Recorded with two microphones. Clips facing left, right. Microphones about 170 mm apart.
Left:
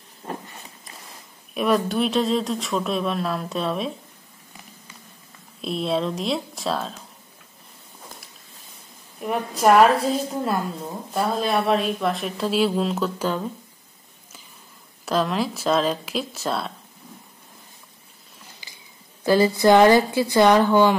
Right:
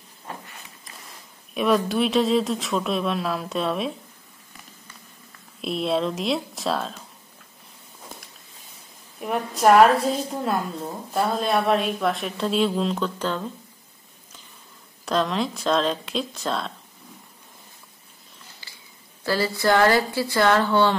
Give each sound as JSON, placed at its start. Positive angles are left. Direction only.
{"t": 1.5, "sound": "speech", "side_deg": 0}
{"t": 5.6, "sound": "speech", "side_deg": 0}
{"t": 9.2, "sound": "speech", "side_deg": 0}
{"t": 15.0, "sound": "speech", "side_deg": 5}
{"t": 18.6, "sound": "a sound", "side_deg": 15}
{"t": 19.2, "sound": "a woman's voice", "side_deg": 20}